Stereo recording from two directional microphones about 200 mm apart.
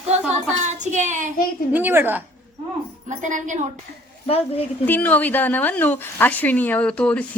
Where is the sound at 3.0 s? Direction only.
40° right (ahead or behind).